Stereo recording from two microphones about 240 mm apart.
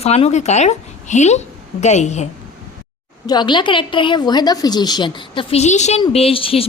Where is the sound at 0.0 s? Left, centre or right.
Left.